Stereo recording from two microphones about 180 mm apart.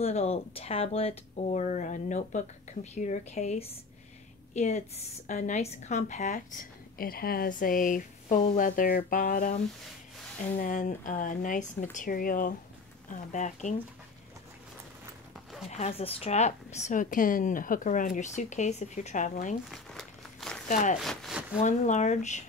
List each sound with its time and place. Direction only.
0.0 s a woman's voice: 35° left (ahead or behind); by 9.6 s 50° left (ahead or behind)
10.6 s speech: 45° left (ahead or behind)
15.7 s a woman's voice: 35° left (ahead or behind)
19.7 s crumpling: centre (ahead or behind)
20.6 s speech: 45° left (ahead or behind)
21.0 s speech: centre (ahead or behind)
21.5 s a woman's voice: 40° left (ahead or behind)